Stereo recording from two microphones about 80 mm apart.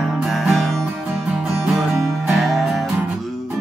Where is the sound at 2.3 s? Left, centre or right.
Centre.